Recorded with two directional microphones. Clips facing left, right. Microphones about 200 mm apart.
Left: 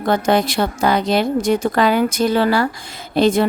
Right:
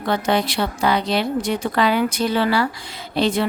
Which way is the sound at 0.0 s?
45° left (ahead or behind).